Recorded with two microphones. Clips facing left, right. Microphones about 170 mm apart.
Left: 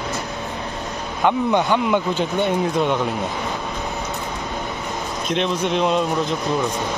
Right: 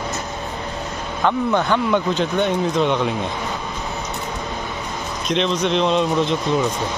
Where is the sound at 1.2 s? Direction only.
15° left (ahead or behind).